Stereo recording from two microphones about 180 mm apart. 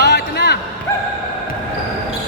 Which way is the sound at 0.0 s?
65° left (ahead or behind).